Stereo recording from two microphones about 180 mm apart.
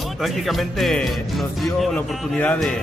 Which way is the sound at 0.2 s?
Centre (ahead or behind).